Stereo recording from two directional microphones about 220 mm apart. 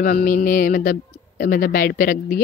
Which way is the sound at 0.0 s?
40° left (ahead or behind).